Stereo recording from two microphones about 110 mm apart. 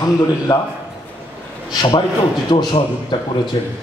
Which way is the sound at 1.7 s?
45° left (ahead or behind).